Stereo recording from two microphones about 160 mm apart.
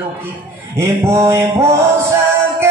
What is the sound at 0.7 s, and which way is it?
Music, 15° right (ahead or behind).